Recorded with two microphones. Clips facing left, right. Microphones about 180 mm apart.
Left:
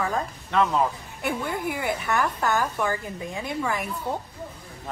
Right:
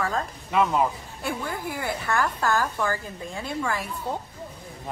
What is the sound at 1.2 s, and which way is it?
Speech, 20° left (ahead or behind).